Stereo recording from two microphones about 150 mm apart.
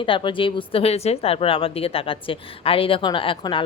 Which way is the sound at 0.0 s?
35° left (ahead or behind).